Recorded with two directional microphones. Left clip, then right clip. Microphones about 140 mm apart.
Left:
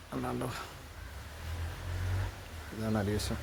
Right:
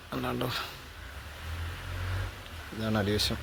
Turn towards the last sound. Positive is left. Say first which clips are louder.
# right 5 dB
turn(degrees=-15)  # may be behind; listen again after turning